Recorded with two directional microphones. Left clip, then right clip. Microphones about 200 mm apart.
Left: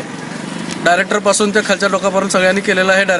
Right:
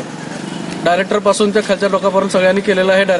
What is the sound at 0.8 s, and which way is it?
Speech, centre (ahead or behind).